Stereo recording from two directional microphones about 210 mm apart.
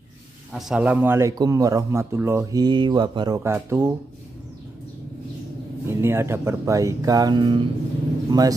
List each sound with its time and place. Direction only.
0.5 s a man's voice: centre (ahead or behind)
5.9 s a man's voice: 10° right (ahead or behind)